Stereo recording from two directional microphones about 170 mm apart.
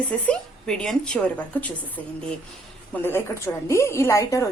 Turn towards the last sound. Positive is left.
turn(degrees=20)  # may be behind; listen again after turning